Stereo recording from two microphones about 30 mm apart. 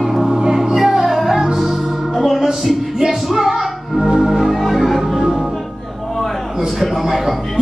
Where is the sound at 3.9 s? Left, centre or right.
Right.